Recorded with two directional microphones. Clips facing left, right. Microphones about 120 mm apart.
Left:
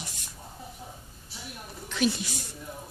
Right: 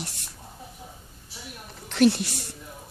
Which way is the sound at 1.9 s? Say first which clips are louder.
Right 7 dB; 65° right (ahead or behind).